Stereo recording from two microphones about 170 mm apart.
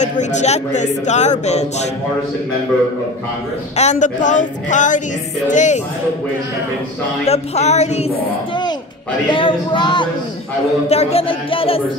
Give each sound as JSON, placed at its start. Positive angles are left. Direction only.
{"t": 0.0, "sound": "speech", "side_deg": 45}
{"t": 3.7, "sound": "speech", "side_deg": 45}
{"t": 7.2, "sound": "speech", "side_deg": 40}
{"t": 9.3, "sound": "speech", "side_deg": 30}
{"t": 10.9, "sound": "speech", "side_deg": 40}